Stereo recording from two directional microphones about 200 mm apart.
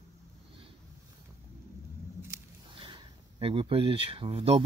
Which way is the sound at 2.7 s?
25° right (ahead or behind).